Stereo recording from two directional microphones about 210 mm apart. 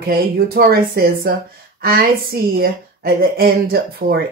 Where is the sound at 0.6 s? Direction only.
45° right (ahead or behind).